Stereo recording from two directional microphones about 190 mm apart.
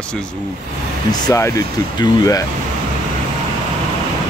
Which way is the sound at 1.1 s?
15° left (ahead or behind).